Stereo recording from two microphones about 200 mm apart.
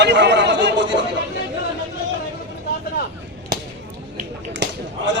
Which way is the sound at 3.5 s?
50° right (ahead or behind).